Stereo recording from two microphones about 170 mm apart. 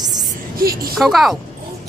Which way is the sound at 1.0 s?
Centre (ahead or behind).